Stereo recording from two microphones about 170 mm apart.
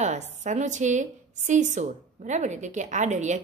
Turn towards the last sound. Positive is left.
turn(degrees=-45)  # may be behind; listen again after turning